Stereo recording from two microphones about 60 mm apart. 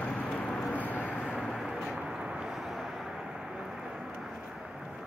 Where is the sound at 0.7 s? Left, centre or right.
Left.